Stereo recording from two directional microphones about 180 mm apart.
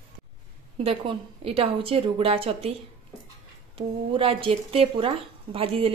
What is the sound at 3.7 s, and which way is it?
Speech, 30° right (ahead or behind).